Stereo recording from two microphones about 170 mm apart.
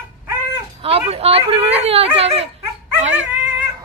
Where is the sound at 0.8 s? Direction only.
35° right (ahead or behind).